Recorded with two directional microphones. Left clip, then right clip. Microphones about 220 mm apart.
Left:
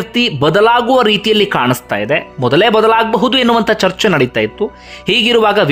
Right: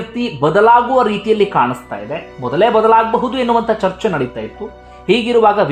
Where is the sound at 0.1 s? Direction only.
20° left (ahead or behind).